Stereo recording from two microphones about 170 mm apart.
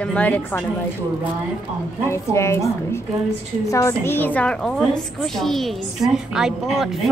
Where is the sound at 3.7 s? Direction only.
15° left (ahead or behind); by 7.1 s centre (ahead or behind).